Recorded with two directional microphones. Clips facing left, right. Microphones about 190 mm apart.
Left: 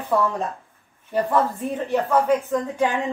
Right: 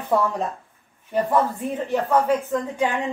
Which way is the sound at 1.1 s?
Centre (ahead or behind).